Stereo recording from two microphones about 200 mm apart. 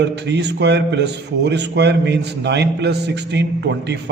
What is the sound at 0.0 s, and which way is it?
A man's voice, 60° right (ahead or behind).